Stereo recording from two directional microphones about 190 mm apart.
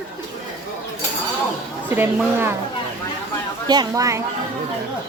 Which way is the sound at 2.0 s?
10° right (ahead or behind).